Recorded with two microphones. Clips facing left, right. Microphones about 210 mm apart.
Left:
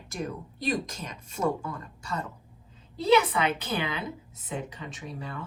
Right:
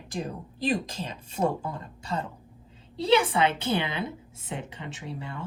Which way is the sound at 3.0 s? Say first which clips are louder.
Even; 30° right (ahead or behind).